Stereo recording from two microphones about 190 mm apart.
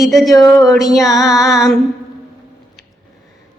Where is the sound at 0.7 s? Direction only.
Centre (ahead or behind).